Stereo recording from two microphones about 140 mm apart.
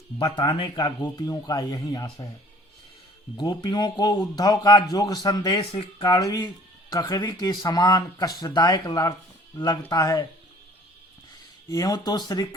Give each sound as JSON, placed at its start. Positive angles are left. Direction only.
{"t": 0.3, "sound": "a man's voice", "side_deg": 40}
{"t": 3.3, "sound": "a man's voice", "side_deg": 30}
{"t": 11.7, "sound": "a man's voice", "side_deg": 25}